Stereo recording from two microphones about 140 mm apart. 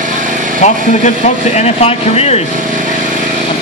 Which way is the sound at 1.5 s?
50° left (ahead or behind).